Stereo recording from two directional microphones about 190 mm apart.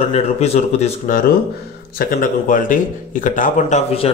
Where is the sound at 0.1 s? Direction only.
35° left (ahead or behind).